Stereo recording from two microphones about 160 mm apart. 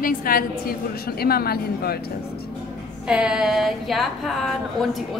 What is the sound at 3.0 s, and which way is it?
A woman's voice, 5° right (ahead or behind).